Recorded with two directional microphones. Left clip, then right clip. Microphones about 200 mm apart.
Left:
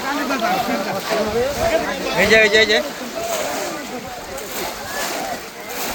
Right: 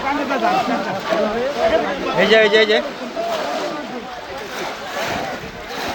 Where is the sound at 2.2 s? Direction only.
5° right (ahead or behind).